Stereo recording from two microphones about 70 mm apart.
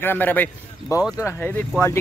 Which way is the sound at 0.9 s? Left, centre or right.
Left.